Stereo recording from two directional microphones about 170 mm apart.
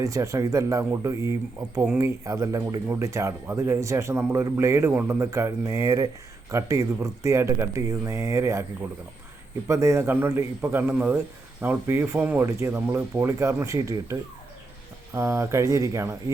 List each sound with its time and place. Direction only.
0.0 s speech: 20° right (ahead or behind)
9.6 s speech: 15° right (ahead or behind)